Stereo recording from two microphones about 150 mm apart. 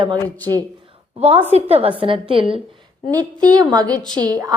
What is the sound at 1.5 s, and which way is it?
A woman's voice, 45° right (ahead or behind).